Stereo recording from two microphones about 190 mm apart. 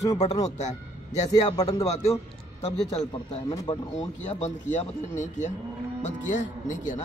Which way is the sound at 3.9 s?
35° left (ahead or behind).